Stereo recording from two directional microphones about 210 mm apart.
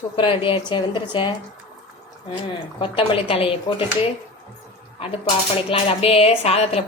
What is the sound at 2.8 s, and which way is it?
Speech, 25° left (ahead or behind).